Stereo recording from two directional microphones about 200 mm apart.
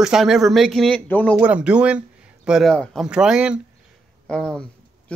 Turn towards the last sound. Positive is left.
turn(degrees=5)  # may be behind; listen again after turning